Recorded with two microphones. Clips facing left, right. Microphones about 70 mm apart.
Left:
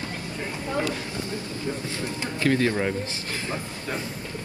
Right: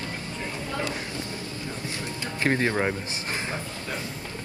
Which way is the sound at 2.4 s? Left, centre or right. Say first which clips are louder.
Left 1 dB; right.